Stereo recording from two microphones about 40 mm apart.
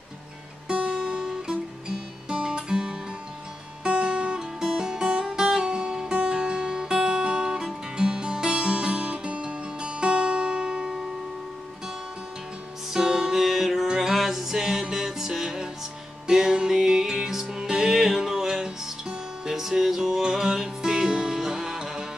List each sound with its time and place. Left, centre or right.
0.7 s music: right
3.8 s guitar: right
4.4 s music: centre
12.9 s music: centre